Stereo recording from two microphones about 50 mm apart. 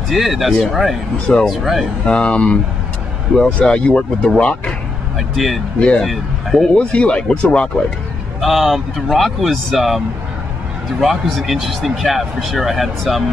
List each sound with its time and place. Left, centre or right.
0.1 s speech: centre
1.2 s speech: centre
1.5 s speech: centre
2.0 s speech: left
5.3 s speech: centre
5.8 s speech: centre
8.4 s speech: centre